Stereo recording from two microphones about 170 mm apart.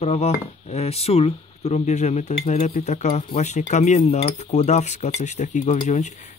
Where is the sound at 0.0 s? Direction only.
40° left (ahead or behind).